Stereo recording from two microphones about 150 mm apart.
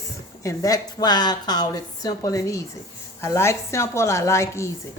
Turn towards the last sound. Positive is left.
turn(degrees=20)  # may be behind; listen again after turning